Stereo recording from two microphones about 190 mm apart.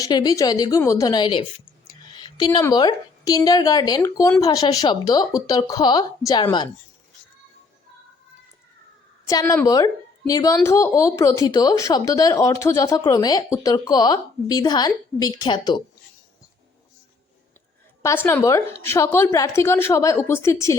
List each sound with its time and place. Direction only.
0.0 s a woman's voice: 20° left (ahead or behind)
9.2 s a woman's voice: 15° left (ahead or behind)
18.0 s a woman's voice: 15° left (ahead or behind)